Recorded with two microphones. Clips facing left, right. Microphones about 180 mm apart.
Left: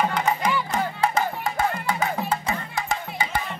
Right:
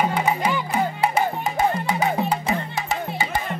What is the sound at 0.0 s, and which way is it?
Music, 10° right (ahead or behind).